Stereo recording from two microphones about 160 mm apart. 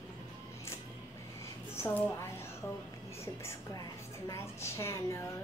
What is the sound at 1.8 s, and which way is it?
A woman's voice, 10° left (ahead or behind).